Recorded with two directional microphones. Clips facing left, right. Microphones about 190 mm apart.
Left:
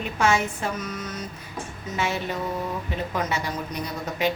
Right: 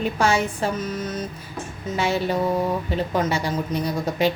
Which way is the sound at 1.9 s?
35° right (ahead or behind).